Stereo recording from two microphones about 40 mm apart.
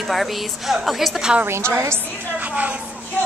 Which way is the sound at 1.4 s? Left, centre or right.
Right.